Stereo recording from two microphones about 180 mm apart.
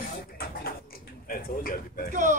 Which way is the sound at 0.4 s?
55° left (ahead or behind).